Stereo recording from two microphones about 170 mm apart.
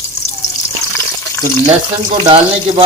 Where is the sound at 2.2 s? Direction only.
25° right (ahead or behind).